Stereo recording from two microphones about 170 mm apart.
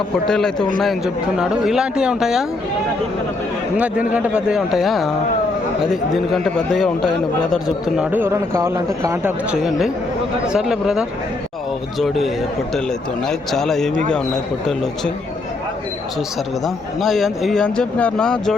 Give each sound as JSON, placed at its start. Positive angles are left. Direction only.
{"t": 0.3, "sound": "a man's voice", "side_deg": 5}
{"t": 4.1, "sound": "a man's voice", "side_deg": -5}
{"t": 8.1, "sound": "a man's voice", "side_deg": -15}
{"t": 16.6, "sound": "a man's voice", "side_deg": 0}